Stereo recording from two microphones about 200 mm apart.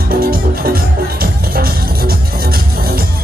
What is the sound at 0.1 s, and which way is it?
Music, 50° right (ahead or behind).